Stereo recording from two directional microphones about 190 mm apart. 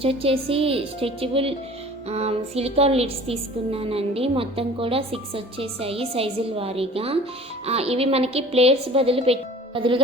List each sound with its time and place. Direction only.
0.0 s a woman's voice: 30° right (ahead or behind)